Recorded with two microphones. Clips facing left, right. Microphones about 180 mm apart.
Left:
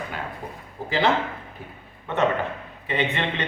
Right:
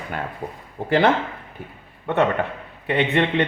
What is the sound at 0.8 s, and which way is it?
Speech, 60° right (ahead or behind).